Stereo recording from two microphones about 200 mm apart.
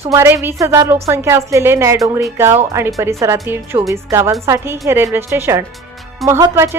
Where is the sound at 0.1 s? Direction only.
15° right (ahead or behind).